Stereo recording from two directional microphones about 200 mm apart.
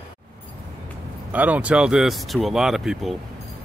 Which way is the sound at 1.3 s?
10° right (ahead or behind).